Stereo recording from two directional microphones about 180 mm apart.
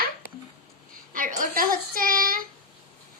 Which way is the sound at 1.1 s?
50° right (ahead or behind).